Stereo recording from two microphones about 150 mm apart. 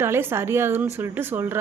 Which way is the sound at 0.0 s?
15° right (ahead or behind).